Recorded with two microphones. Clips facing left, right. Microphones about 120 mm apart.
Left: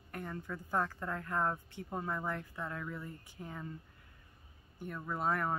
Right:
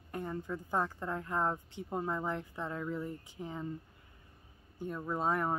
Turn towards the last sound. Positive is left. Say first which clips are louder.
# right 2 dB
turn(degrees=-20)  # may be behind; listen again after turning